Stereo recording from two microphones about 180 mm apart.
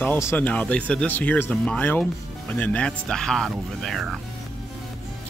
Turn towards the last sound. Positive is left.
turn(degrees=0)  # may be behind; listen again after turning